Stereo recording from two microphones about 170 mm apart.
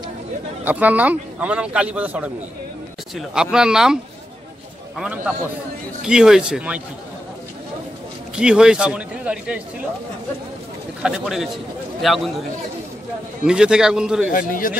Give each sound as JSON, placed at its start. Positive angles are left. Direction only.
{"t": 0.7, "sound": "a man's voice", "side_deg": -10}
{"t": 8.4, "sound": "speech", "side_deg": -5}
{"t": 11.0, "sound": "speech", "side_deg": 0}
{"t": 13.5, "sound": "speech", "side_deg": -5}
{"t": 14.3, "sound": "a man's voice", "side_deg": 55}